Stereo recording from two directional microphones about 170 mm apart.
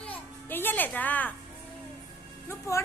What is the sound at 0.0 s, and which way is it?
Music, 10° left (ahead or behind).